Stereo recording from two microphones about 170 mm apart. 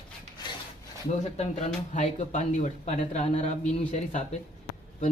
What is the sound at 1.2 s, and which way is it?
Speech, 40° left (ahead or behind).